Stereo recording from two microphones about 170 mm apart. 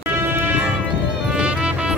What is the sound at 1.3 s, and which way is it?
Music, 5° right (ahead or behind).